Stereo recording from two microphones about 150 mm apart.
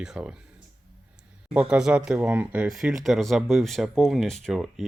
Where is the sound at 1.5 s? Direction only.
5° right (ahead or behind).